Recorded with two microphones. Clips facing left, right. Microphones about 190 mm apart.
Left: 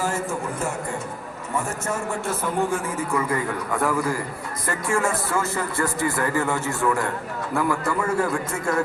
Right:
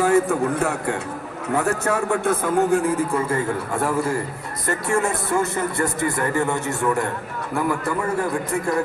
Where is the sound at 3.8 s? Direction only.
25° right (ahead or behind).